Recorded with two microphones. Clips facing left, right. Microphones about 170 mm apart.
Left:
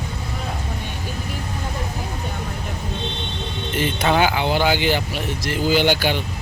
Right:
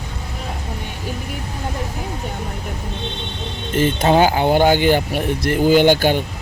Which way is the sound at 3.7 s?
45° right (ahead or behind).